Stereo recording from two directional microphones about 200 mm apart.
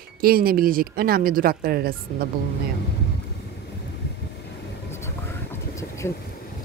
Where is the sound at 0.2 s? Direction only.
45° right (ahead or behind).